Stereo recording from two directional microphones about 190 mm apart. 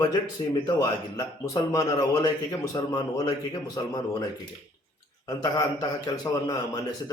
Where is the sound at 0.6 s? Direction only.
20° left (ahead or behind).